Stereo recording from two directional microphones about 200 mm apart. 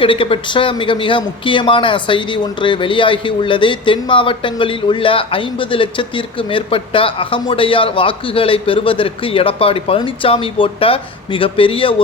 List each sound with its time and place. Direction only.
0.0 s a man's voice: 25° left (ahead or behind)